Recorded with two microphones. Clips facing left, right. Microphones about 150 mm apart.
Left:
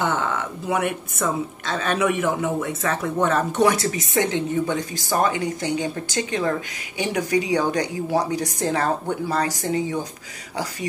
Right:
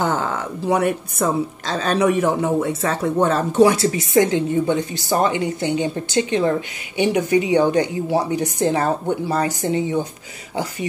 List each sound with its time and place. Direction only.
0.0 s a woman's voice: 35° right (ahead or behind)